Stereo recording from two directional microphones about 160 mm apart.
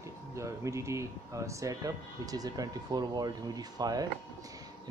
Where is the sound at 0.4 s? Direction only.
20° right (ahead or behind).